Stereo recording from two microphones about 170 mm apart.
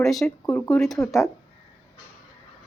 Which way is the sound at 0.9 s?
20° left (ahead or behind).